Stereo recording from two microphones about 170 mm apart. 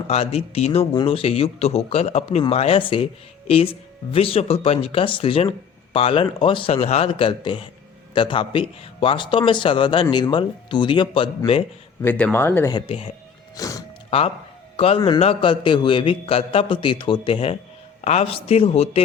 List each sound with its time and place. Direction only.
0.1 s a man's voice: 35° left (ahead or behind)
12.0 s speech: 10° left (ahead or behind)
12.7 s speech: 30° left (ahead or behind)
13.6 s music: 20° left (ahead or behind)
14.1 s a man's voice: 35° left (ahead or behind)